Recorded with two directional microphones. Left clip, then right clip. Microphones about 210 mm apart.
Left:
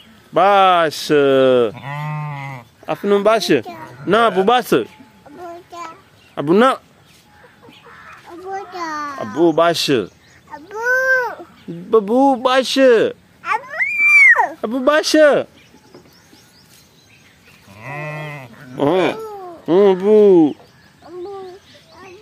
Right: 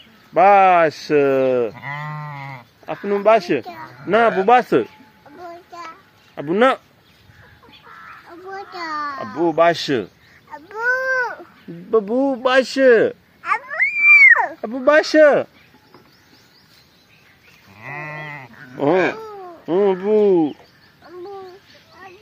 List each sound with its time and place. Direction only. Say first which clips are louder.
0.3 s speech: even; 15° left (ahead or behind)
1.8 s goat: left 1 dB; 30° left (ahead or behind)
2.9 s speech: left 1 dB; 20° left (ahead or behind)
6.3 s speech: left 3 dB; 25° left (ahead or behind)
8.3 s children playing: left 5 dB; centre (ahead or behind)
9.5 s speech: even; 10° left (ahead or behind)
10.5 s baby cry: left 2 dB; centre (ahead or behind)
11.9 s speech: left 5 dB; 5° left (ahead or behind)
14.0 s a sound: even; 10° left (ahead or behind)
15.1 s speech: left 1 dB; 5° left (ahead or behind)
17.7 s sheep: left 2 dB; 55° left (ahead or behind)
18.8 s a sound: left 1 dB; 10° left (ahead or behind)
19.2 s a sound: left 4 dB; 10° right (ahead or behind)
19.6 s chicken: left 5 dB; 10° left (ahead or behind)